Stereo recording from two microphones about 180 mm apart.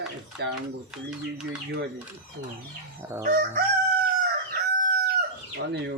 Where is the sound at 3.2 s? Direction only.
50° right (ahead or behind).